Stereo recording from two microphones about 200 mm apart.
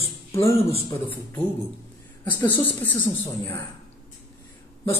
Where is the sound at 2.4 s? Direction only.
10° left (ahead or behind).